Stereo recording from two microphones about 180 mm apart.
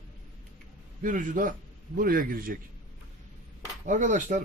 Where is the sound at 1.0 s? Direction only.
45° right (ahead or behind).